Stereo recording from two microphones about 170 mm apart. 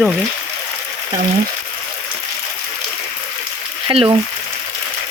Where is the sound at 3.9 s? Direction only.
30° right (ahead or behind).